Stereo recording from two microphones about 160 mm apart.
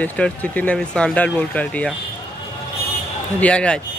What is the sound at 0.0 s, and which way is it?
Speech, 10° left (ahead or behind).